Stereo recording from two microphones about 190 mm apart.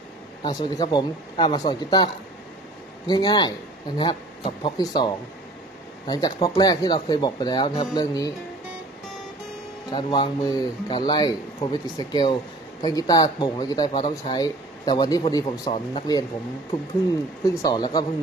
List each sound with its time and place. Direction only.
0.4 s speech: 20° left (ahead or behind)
3.1 s speech: 20° left (ahead or behind)
9.8 s speech: 25° left (ahead or behind)
17.6 s speech: 20° left (ahead or behind)